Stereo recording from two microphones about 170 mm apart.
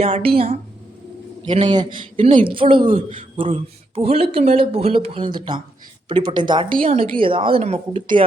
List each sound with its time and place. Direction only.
0.0 s a man's voice: 35° right (ahead or behind)
1.4 s a sound: 30° right (ahead or behind)
1.7 s a man's voice: 25° right (ahead or behind)